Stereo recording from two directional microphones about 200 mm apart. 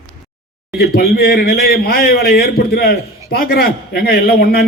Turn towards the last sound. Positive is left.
turn(degrees=50)  # may be behind; listen again after turning